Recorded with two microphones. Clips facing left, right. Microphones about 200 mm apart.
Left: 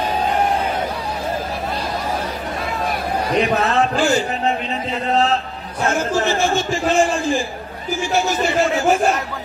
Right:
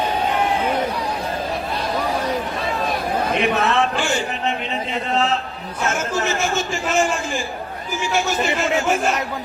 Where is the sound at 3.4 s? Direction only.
35° left (ahead or behind).